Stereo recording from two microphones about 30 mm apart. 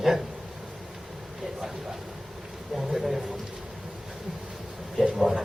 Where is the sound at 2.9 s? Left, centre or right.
Centre.